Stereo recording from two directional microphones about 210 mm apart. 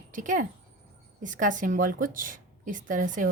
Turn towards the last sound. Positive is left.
turn(degrees=-40)  # may be behind; listen again after turning